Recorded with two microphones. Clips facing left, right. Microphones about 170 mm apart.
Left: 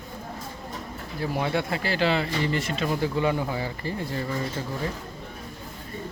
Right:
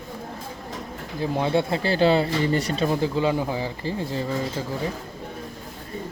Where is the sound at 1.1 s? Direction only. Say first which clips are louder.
Right 4 dB; 25° right (ahead or behind).